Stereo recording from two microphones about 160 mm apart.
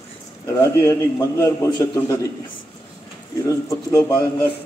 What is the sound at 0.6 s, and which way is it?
A man's voice, 20° left (ahead or behind).